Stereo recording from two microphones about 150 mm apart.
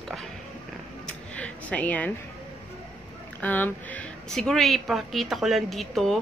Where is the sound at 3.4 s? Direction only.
10° left (ahead or behind).